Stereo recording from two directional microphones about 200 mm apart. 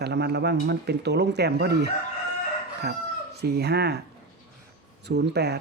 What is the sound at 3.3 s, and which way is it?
Speech, 55° right (ahead or behind).